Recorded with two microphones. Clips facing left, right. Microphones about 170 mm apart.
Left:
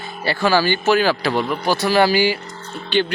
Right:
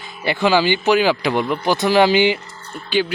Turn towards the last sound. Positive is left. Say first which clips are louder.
# even
turn(degrees=-10)  # may be behind; listen again after turning